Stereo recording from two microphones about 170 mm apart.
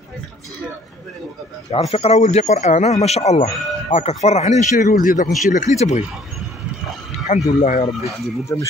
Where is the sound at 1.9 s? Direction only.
40° left (ahead or behind).